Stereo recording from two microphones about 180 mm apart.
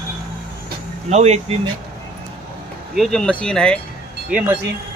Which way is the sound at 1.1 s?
35° right (ahead or behind).